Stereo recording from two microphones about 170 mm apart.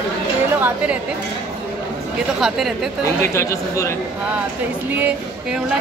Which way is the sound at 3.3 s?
15° left (ahead or behind).